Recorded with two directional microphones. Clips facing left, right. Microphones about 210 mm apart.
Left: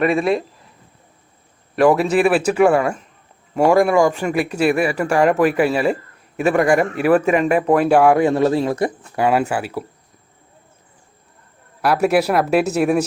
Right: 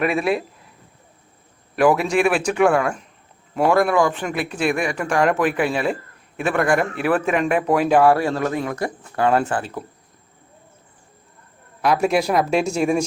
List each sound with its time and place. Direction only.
0.0 s speech: centre (ahead or behind)
1.7 s speech: centre (ahead or behind); by 8.9 s 25° left (ahead or behind)
9.1 s speech: 10° left (ahead or behind)
11.8 s speech: 5° left (ahead or behind)